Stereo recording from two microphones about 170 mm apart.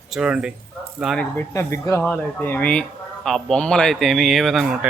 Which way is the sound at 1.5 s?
15° left (ahead or behind).